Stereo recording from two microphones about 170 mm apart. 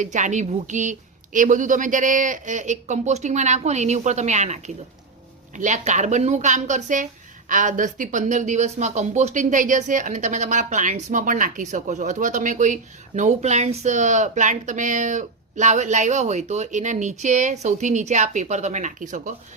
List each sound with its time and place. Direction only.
0.0 s a woman's voice: 45° right (ahead or behind)